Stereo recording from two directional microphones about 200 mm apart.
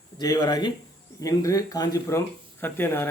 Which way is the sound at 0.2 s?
20° left (ahead or behind).